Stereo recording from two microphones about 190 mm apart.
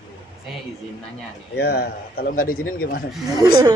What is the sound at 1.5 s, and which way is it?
Speech, 55° left (ahead or behind).